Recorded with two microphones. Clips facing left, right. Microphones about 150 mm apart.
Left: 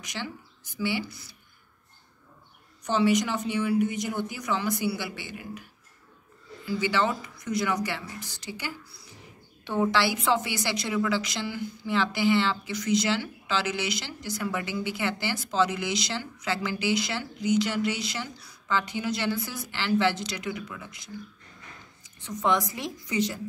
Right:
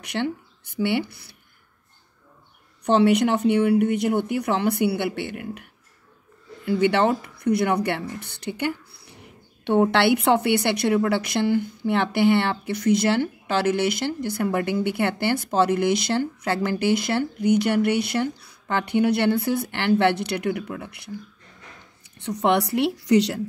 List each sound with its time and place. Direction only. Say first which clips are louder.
0.0 s speech: right 10 dB; 65° right (ahead or behind)
2.8 s a woman's voice: right 6 dB; 65° right (ahead or behind)